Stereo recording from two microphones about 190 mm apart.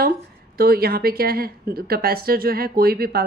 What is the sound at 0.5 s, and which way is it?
A woman's voice, 50° right (ahead or behind).